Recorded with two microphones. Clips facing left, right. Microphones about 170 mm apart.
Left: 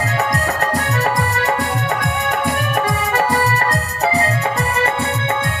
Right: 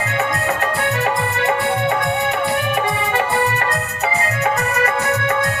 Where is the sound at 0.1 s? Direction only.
40° left (ahead or behind).